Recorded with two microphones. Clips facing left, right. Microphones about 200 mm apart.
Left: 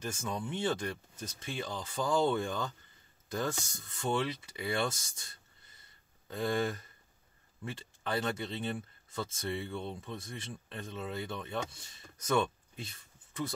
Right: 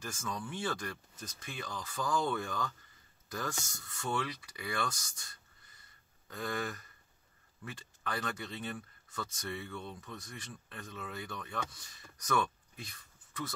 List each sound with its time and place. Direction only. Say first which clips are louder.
0.0 s speech: left 3 dB; 25° left (ahead or behind)
6.2 s speech: left 6 dB; 25° left (ahead or behind)